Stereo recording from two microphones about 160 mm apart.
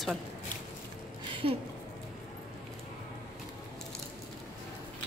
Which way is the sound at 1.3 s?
30° right (ahead or behind).